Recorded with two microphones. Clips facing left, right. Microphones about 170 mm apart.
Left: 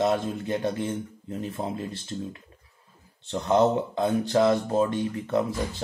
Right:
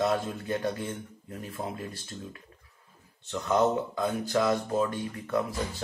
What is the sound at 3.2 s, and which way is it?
Speech, 30° left (ahead or behind).